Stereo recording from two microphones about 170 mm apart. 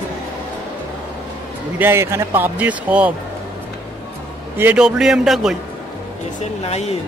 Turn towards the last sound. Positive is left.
turn(degrees=40)  # may be behind; listen again after turning